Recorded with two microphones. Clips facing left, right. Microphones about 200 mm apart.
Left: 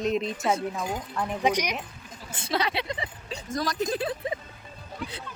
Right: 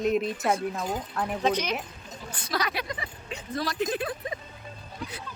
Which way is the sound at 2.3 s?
25° left (ahead or behind).